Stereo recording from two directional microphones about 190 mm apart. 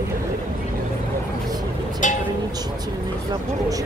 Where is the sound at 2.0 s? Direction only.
40° left (ahead or behind).